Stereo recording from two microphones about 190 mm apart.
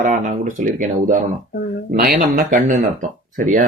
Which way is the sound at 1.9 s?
50° right (ahead or behind).